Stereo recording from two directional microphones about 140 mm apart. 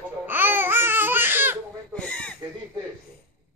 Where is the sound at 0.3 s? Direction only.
15° right (ahead or behind).